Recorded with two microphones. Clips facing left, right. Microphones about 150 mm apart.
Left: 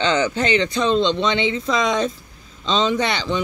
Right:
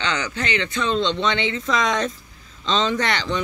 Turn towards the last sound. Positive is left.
turn(degrees=10)  # may be behind; listen again after turning